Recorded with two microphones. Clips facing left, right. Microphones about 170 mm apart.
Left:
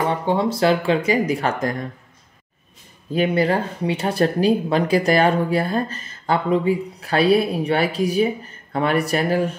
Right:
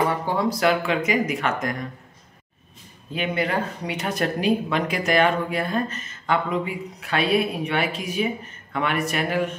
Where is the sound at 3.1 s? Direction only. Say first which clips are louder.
Left 6 dB; 35° left (ahead or behind).